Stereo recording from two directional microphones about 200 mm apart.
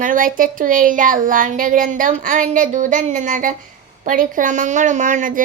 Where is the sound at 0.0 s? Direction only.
40° right (ahead or behind).